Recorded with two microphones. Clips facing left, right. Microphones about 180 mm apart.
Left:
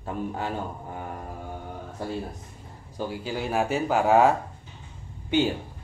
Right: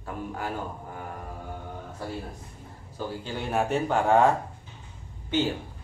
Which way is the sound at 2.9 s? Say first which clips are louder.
Left 3 dB; 10° left (ahead or behind).